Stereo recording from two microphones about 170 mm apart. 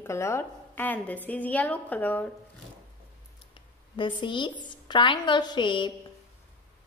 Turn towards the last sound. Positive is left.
turn(degrees=30)  # may be behind; listen again after turning